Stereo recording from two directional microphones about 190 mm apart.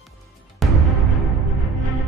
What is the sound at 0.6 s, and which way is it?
Music, centre (ahead or behind).